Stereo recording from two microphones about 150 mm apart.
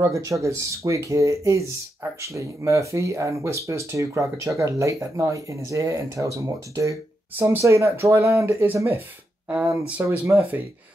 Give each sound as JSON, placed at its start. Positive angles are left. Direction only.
{"t": 0.0, "sound": "speech", "side_deg": -20}
{"t": 10.0, "sound": "speech", "side_deg": -15}